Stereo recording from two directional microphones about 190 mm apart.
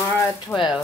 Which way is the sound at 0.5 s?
Centre (ahead or behind).